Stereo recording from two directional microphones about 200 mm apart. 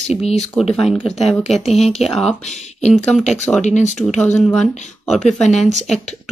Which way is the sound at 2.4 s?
35° left (ahead or behind).